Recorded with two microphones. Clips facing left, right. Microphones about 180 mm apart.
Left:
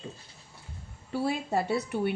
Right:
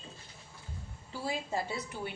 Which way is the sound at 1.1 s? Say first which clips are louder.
Left 7 dB; 65° left (ahead or behind).